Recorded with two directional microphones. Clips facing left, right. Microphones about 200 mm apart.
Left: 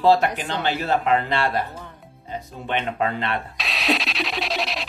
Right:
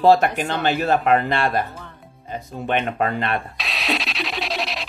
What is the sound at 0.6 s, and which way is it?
Speech, 50° right (ahead or behind).